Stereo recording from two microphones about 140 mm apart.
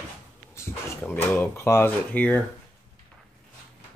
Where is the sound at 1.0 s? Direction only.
15° left (ahead or behind).